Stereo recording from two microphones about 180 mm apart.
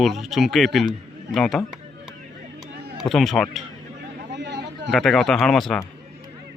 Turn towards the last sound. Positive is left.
turn(degrees=0)  # may be behind; listen again after turning